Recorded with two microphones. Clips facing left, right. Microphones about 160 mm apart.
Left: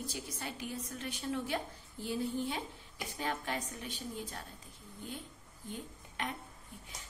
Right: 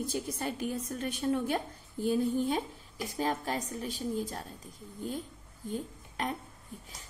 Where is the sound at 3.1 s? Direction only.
40° right (ahead or behind).